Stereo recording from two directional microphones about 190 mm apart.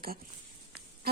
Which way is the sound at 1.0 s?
55° right (ahead or behind).